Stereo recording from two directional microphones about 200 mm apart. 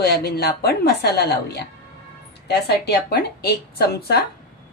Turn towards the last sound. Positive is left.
turn(degrees=55)  # may be behind; listen again after turning